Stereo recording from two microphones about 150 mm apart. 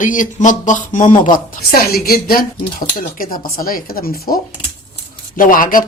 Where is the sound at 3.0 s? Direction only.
70° left (ahead or behind).